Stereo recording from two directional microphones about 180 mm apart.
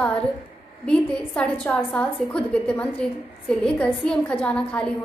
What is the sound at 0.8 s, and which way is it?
A woman's voice, 5° left (ahead or behind).